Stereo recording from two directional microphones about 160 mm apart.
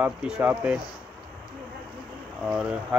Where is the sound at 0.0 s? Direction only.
5° right (ahead or behind).